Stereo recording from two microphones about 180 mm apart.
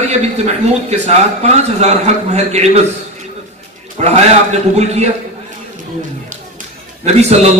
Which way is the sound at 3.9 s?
40° right (ahead or behind).